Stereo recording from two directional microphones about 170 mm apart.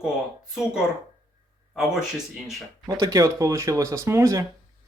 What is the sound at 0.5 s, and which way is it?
Speech, 5° right (ahead or behind).